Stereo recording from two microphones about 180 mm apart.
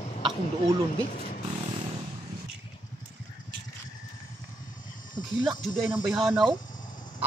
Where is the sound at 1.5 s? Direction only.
30° right (ahead or behind).